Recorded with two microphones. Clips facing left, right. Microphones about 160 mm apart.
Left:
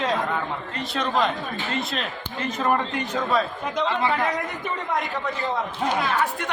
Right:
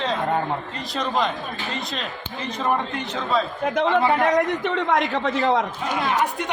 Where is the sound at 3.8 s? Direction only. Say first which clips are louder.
Right 5 dB; 55° right (ahead or behind).